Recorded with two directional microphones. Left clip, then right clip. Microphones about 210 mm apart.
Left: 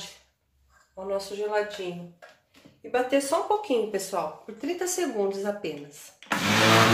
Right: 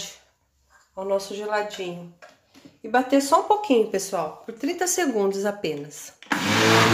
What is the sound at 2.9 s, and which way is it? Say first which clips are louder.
Speech: right 5 dB; 35° right (ahead or behind).